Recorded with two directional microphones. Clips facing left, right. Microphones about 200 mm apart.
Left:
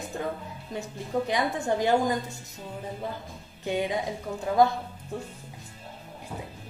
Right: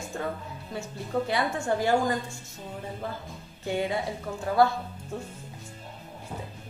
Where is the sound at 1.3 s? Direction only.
20° left (ahead or behind).